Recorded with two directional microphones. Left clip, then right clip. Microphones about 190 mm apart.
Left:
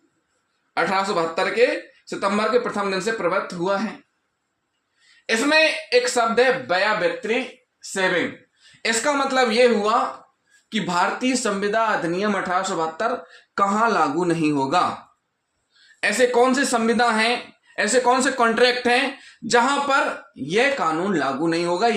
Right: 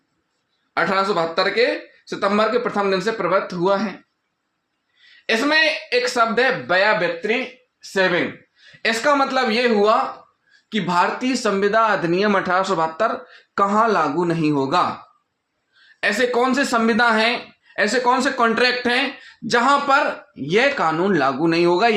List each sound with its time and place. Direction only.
0.7 s speech: 25° right (ahead or behind)
5.2 s speech: 40° right (ahead or behind)
8.8 s speech: 40° right (ahead or behind)
10.7 s speech: 20° right (ahead or behind); by 13.3 s 35° right (ahead or behind)
13.6 s speech: 20° right (ahead or behind)
16.0 s speech: 20° right (ahead or behind); by 21.9 s 40° right (ahead or behind)